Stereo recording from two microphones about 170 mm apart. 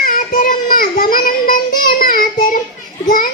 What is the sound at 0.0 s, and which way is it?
Child singing, 55° left (ahead or behind).